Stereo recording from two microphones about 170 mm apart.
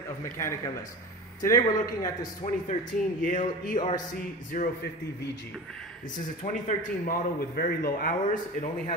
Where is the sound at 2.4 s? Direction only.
50° left (ahead or behind).